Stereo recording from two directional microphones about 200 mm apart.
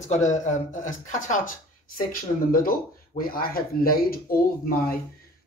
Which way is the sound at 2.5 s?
45° left (ahead or behind).